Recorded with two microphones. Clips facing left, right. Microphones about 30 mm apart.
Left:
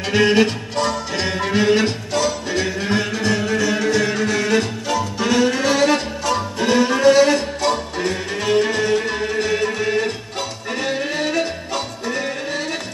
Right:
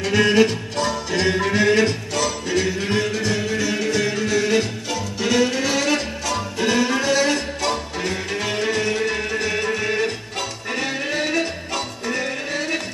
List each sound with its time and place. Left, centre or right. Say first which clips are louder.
0.0 s music: left 1 dB; centre
3.5 s music: left 3 dB; centre
4.1 s music: left 1 dB; centre